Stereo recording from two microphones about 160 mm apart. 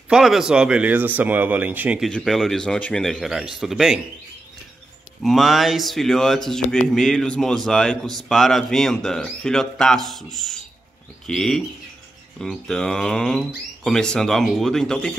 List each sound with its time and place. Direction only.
0.1 s speech: 5° right (ahead or behind)
2.0 s speech: centre (ahead or behind)
5.2 s speech: centre (ahead or behind)